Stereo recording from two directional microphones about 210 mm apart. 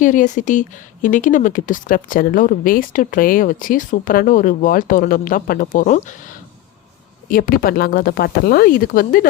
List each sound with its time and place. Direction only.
0.0 s speech: 40° left (ahead or behind)